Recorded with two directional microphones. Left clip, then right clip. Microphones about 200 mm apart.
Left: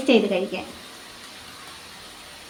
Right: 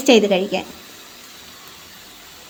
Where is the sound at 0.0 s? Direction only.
45° right (ahead or behind).